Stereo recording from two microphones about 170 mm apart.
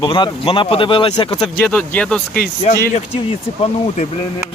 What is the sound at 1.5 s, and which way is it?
Speech, 5° left (ahead or behind).